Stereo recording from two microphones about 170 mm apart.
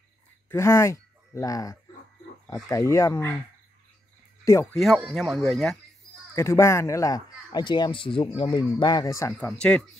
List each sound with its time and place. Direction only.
0.5 s speech: 15° left (ahead or behind)
4.5 s speech: 15° left (ahead or behind)
4.7 s speech: centre (ahead or behind)
6.3 s speech: 15° left (ahead or behind)
9.5 s speech: 5° left (ahead or behind)